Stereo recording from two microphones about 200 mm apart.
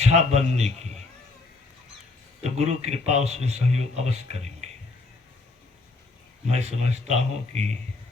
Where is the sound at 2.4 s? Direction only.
35° right (ahead or behind).